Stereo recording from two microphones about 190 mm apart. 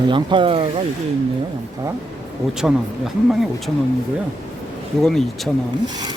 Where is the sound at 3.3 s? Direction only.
Centre (ahead or behind).